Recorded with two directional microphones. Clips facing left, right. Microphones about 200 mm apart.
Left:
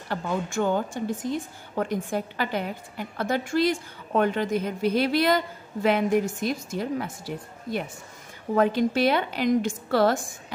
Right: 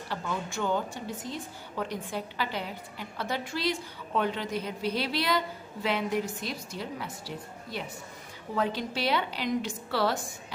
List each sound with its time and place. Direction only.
0.1 s a woman's voice: 50° left (ahead or behind)